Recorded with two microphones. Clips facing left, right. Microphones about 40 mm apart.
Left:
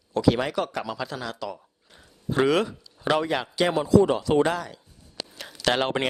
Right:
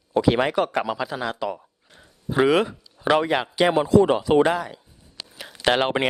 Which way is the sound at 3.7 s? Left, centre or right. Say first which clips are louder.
Right 1 dB; right.